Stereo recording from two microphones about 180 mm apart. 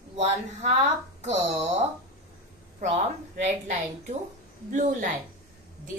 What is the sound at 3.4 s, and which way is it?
Speech, 40° right (ahead or behind).